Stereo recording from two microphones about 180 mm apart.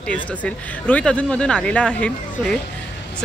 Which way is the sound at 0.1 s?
10° left (ahead or behind).